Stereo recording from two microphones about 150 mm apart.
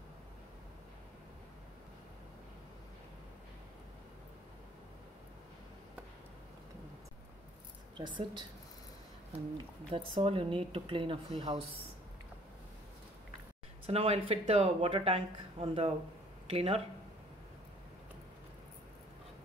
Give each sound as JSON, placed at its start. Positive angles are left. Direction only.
{"t": 8.0, "sound": "speech", "side_deg": -30}
{"t": 9.8, "sound": "speech", "side_deg": -35}
{"t": 13.8, "sound": "speech", "side_deg": -40}